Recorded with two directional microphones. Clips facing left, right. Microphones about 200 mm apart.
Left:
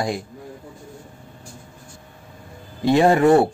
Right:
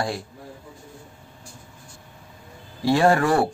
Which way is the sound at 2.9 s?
20° left (ahead or behind).